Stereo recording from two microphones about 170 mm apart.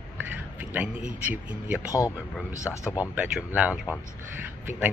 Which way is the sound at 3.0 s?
10° right (ahead or behind).